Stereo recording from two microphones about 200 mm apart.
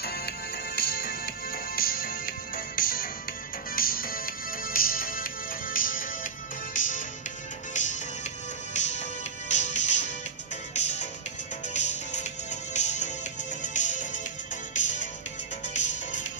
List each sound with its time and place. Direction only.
0.7 s music: 50° left (ahead or behind)
8.7 s music: 35° left (ahead or behind)